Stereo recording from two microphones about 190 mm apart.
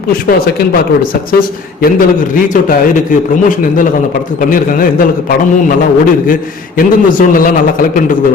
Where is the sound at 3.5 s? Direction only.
45° left (ahead or behind).